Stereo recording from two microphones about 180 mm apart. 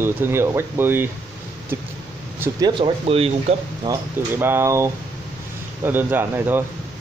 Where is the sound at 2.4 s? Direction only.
20° right (ahead or behind).